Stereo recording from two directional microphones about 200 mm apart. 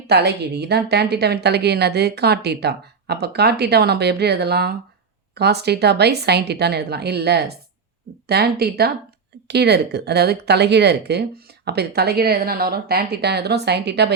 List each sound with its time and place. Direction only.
0.1 s speech: 55° right (ahead or behind)